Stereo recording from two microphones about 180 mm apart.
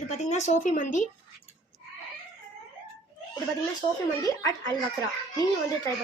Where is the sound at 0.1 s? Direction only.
40° left (ahead or behind).